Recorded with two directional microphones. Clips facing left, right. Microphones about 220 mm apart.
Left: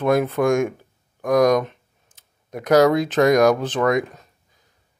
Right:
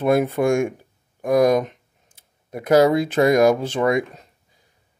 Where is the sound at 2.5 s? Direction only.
5° right (ahead or behind).